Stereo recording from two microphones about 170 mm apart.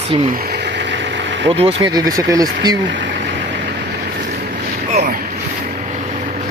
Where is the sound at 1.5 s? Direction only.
35° right (ahead or behind).